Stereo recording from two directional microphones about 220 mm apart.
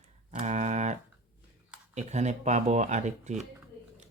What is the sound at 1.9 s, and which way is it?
Speech, 30° right (ahead or behind).